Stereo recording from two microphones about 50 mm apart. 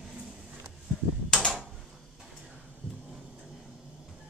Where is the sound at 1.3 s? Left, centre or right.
Centre.